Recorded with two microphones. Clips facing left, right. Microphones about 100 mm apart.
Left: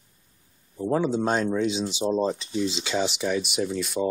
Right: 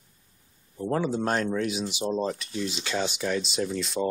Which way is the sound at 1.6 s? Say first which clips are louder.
Left 3 dB; 25° left (ahead or behind).